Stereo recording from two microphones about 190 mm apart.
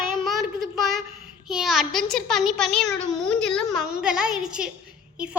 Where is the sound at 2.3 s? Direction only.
Centre (ahead or behind).